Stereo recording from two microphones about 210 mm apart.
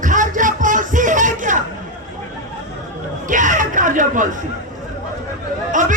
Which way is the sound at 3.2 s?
35° right (ahead or behind).